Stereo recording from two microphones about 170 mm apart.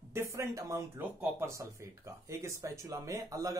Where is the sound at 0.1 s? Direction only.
15° right (ahead or behind).